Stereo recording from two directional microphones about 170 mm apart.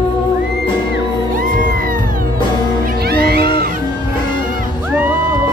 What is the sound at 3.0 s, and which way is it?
Music, 70° right (ahead or behind).